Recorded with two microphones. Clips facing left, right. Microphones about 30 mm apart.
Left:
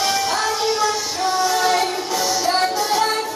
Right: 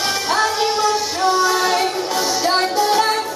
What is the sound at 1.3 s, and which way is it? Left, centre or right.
Music, centre.